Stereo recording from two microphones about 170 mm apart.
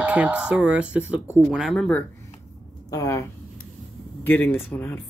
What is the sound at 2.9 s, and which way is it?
Speech, 20° left (ahead or behind).